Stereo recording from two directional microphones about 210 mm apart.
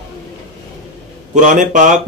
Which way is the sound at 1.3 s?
35° right (ahead or behind).